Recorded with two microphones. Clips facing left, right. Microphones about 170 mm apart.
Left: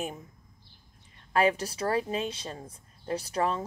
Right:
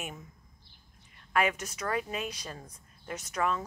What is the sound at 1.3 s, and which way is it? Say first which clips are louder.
Speech: left 4 dB; 30° left (ahead or behind).